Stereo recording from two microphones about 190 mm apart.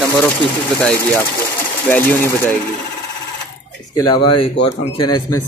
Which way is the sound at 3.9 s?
25° left (ahead or behind).